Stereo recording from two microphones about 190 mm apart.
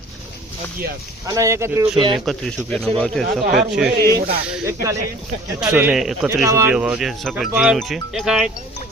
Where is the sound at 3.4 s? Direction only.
45° right (ahead or behind).